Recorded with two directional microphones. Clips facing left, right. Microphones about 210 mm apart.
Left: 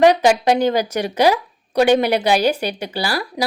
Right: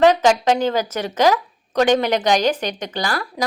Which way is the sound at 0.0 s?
15° left (ahead or behind).